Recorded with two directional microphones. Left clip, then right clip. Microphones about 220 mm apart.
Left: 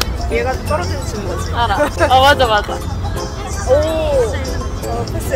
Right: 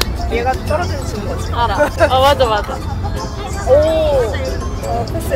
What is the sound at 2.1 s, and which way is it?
Speech, 35° left (ahead or behind).